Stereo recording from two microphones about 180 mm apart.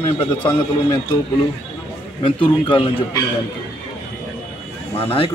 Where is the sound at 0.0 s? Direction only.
30° left (ahead or behind).